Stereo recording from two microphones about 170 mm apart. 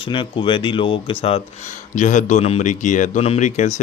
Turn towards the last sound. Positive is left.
turn(degrees=45)  # may be behind; listen again after turning